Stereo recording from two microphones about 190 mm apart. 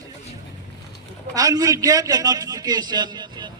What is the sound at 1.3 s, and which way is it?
A man's voice, 20° right (ahead or behind).